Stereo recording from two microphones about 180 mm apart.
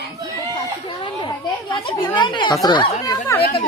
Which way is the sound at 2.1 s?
25° left (ahead or behind).